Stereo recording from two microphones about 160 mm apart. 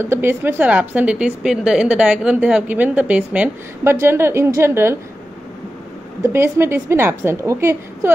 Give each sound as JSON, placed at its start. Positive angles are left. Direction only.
{"t": 0.0, "sound": "a woman's voice", "side_deg": -15}
{"t": 6.2, "sound": "a woman's voice", "side_deg": -15}